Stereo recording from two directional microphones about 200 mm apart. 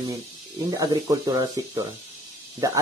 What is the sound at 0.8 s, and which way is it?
Speech, 20° right (ahead or behind).